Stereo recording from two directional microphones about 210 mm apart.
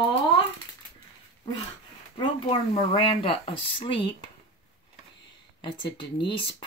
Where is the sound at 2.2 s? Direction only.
25° left (ahead or behind).